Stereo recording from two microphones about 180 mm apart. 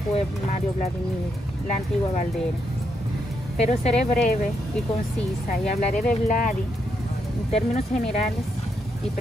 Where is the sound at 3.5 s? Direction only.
35° left (ahead or behind).